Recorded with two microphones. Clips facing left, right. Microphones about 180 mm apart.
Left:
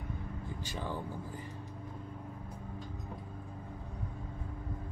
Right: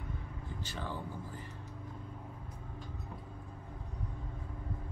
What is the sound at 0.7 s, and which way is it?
Speech, 15° left (ahead or behind).